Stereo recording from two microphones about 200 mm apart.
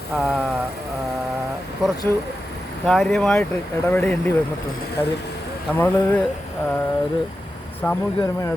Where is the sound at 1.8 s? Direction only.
Centre (ahead or behind).